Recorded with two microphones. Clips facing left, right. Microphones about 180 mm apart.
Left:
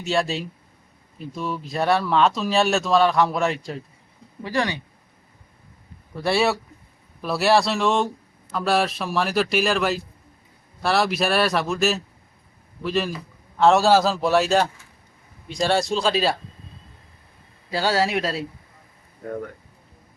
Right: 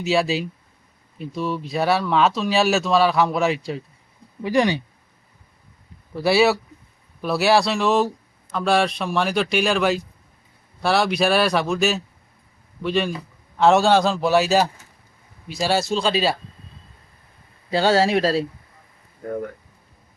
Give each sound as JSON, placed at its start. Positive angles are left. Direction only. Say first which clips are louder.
{"t": 0.0, "sound": "speech", "louder": "right 3 dB", "side_deg": 0}
{"t": 4.4, "sound": "speech", "louder": "right 6 dB", "side_deg": -15}
{"t": 6.1, "sound": "speech", "louder": "right 4 dB", "side_deg": 0}
{"t": 17.7, "sound": "speech", "louder": "right 4 dB", "side_deg": -25}